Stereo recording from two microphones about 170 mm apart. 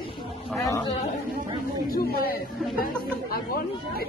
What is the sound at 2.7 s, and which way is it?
Chatter, 60° left (ahead or behind).